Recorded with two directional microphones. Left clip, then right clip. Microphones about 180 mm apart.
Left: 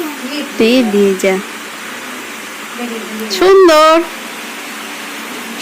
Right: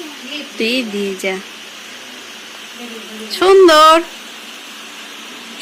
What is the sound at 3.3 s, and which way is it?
Speech, 10° left (ahead or behind).